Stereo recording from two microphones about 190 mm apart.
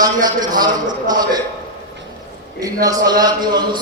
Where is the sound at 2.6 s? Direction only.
20° right (ahead or behind).